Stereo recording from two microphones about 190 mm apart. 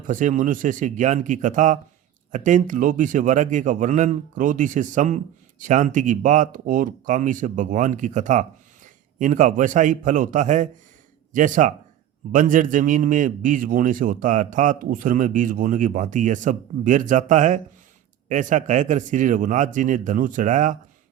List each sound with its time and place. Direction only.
0.1 s a man's voice: 45° right (ahead or behind)